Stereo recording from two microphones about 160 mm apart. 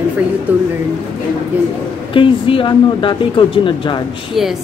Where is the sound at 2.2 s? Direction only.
35° left (ahead or behind).